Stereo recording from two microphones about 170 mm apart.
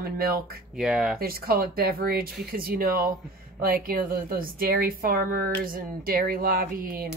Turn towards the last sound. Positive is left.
turn(degrees=-60)  # may be behind; listen again after turning